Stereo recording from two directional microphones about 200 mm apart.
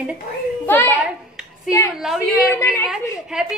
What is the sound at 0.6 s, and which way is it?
A woman's voice, 10° left (ahead or behind).